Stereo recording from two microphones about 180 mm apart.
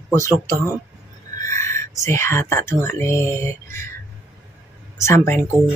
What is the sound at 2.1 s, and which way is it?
Speech, 15° left (ahead or behind).